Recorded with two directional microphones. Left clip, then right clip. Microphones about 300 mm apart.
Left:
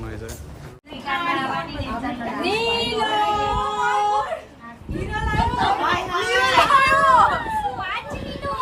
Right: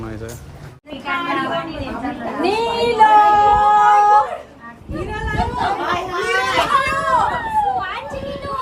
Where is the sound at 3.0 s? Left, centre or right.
Right.